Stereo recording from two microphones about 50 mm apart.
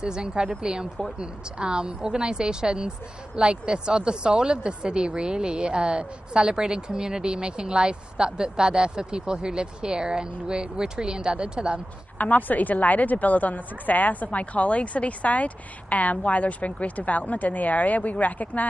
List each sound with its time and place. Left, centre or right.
0.0 s speech: centre
12.2 s a woman's voice: left